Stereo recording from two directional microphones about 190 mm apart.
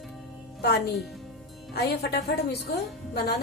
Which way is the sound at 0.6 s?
60° left (ahead or behind).